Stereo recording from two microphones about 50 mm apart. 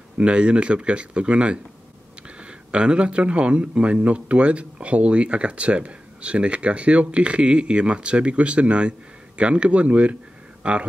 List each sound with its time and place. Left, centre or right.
0.2 s speech: right